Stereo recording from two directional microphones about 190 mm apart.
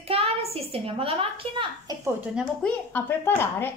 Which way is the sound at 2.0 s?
5° right (ahead or behind).